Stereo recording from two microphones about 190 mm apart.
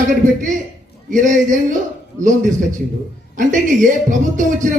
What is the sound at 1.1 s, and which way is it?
Speech, 45° right (ahead or behind).